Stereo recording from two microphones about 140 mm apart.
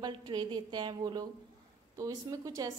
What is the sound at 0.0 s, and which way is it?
A woman's voice, 30° right (ahead or behind).